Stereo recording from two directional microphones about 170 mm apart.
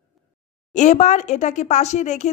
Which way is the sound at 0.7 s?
45° left (ahead or behind).